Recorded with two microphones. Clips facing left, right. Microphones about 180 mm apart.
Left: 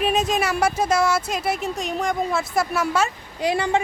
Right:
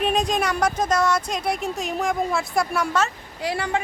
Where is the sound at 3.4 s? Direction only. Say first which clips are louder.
Left 4 dB; 20° left (ahead or behind).